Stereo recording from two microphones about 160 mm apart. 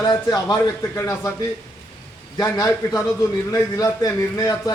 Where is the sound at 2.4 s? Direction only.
20° left (ahead or behind).